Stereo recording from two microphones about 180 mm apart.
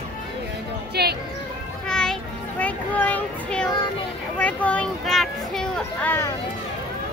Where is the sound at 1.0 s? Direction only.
60° right (ahead or behind).